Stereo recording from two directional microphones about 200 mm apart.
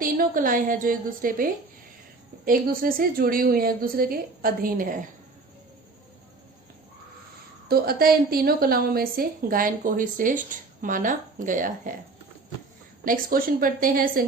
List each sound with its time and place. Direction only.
0.0 s a woman's voice: 45° right (ahead or behind)
7.7 s a woman's voice: 50° right (ahead or behind)
13.1 s a woman's voice: 45° right (ahead or behind)